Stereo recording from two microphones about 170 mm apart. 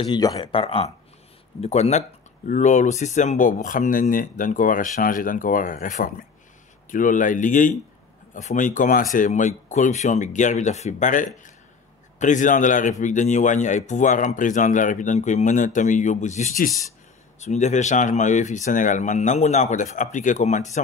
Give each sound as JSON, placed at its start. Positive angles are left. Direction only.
{"t": 0.0, "sound": "speech", "side_deg": 25}